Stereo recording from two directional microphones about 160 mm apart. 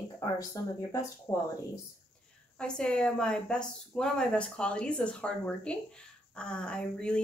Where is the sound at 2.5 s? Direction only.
5° left (ahead or behind).